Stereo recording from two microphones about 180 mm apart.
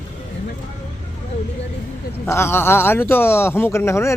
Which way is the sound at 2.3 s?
15° left (ahead or behind).